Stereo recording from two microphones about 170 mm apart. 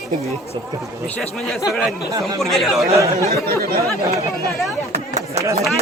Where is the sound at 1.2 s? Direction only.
Centre (ahead or behind).